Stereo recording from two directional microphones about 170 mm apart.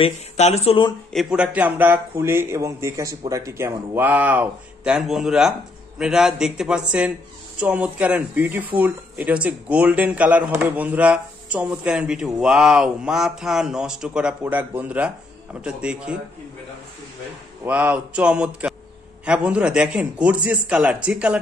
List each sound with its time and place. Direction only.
0.0 s speech: 40° left (ahead or behind)
1.1 s a man's voice: 5° right (ahead or behind)
17.6 s speech: 10° right (ahead or behind)